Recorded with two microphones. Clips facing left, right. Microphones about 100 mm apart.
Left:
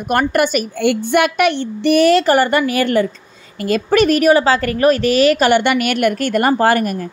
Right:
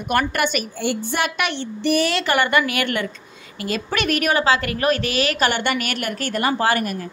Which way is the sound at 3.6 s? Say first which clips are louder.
Left 10 dB; 45° left (ahead or behind).